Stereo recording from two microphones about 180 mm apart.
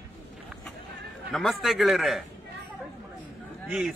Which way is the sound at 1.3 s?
Centre (ahead or behind).